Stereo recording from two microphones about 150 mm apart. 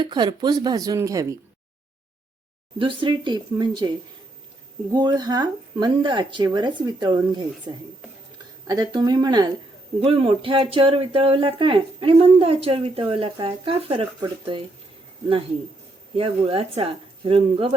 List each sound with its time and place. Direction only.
0.0 s speech: 30° right (ahead or behind)
2.7 s speech: 35° right (ahead or behind)
10.0 s speech: 40° right (ahead or behind)
16.1 s speech: 35° right (ahead or behind)